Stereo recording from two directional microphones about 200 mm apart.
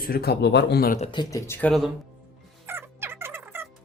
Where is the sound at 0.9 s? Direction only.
25° left (ahead or behind).